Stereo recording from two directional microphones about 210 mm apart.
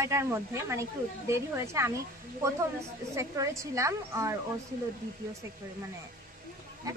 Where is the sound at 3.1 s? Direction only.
15° right (ahead or behind).